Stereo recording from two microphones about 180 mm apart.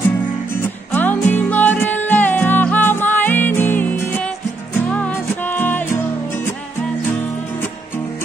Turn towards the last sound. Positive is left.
turn(degrees=10)  # may be behind; listen again after turning